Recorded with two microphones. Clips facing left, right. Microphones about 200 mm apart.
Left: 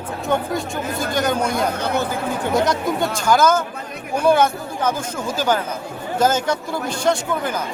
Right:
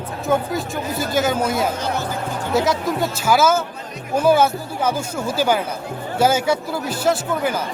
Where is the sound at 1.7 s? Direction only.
60° left (ahead or behind).